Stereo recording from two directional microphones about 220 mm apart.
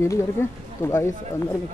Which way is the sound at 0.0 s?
15° left (ahead or behind).